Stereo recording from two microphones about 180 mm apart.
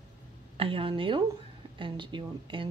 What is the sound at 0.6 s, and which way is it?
Speech, 30° right (ahead or behind).